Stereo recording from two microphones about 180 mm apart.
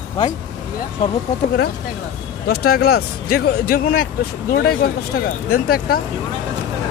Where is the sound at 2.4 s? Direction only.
60° left (ahead or behind).